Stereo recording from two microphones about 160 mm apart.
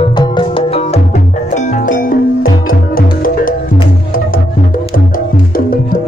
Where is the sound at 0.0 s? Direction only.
30° left (ahead or behind).